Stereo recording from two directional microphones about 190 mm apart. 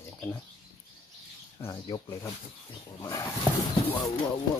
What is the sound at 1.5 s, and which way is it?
Speech, 20° left (ahead or behind).